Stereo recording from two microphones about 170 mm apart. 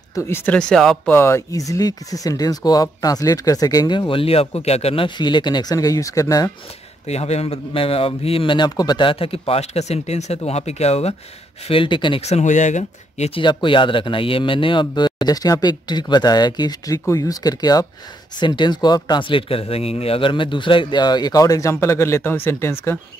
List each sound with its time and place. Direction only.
0.1 s speech: 15° left (ahead or behind)
7.1 s a man's voice: 40° left (ahead or behind)
13.4 s speech: 30° left (ahead or behind)